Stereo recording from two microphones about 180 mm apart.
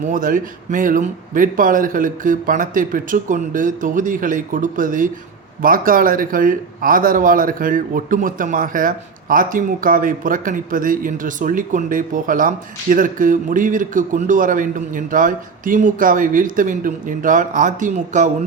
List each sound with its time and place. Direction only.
0.1 s speech: 50° right (ahead or behind)